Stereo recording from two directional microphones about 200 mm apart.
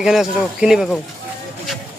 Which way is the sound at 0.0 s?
Centre (ahead or behind).